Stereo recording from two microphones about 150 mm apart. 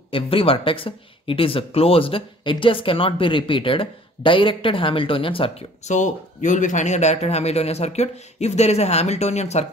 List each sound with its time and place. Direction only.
0.1 s speech: 40° left (ahead or behind)
5.9 s speech: 55° left (ahead or behind)